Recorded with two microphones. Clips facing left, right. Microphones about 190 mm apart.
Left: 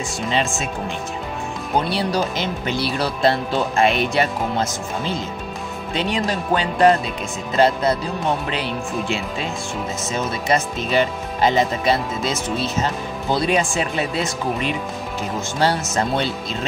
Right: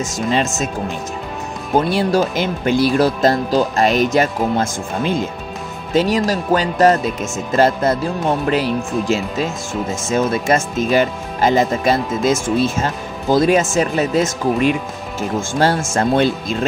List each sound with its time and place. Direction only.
0.0 s speech: 45° right (ahead or behind)
1.8 s speech: 50° right (ahead or behind)
5.9 s speech: 40° right (ahead or behind)